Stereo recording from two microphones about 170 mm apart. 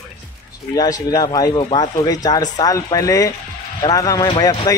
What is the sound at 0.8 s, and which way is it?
A man's voice, 20° left (ahead or behind).